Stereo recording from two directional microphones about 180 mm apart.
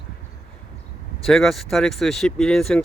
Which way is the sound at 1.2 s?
Centre (ahead or behind).